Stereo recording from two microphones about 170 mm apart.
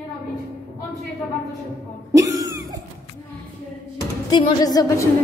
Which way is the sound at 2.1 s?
20° right (ahead or behind).